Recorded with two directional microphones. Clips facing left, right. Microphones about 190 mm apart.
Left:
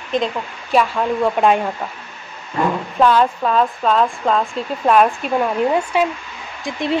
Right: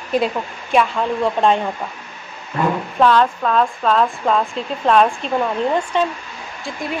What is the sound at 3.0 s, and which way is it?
Speech, 5° left (ahead or behind).